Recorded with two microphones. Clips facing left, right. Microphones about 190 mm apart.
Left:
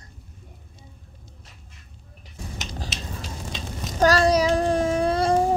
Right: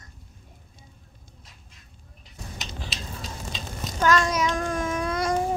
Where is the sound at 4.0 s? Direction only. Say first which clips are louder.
Left 4 dB; 35° left (ahead or behind).